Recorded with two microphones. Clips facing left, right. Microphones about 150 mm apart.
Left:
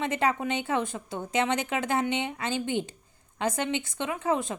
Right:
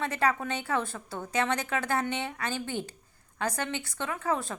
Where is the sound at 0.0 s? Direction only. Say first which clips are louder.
Left 2 dB; 20° left (ahead or behind).